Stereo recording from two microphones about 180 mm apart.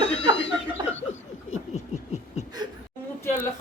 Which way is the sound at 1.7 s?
40° left (ahead or behind).